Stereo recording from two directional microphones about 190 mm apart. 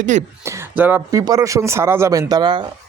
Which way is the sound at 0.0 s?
40° right (ahead or behind).